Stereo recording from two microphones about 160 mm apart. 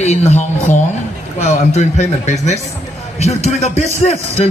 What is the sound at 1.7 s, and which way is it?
A man's voice, 45° left (ahead or behind).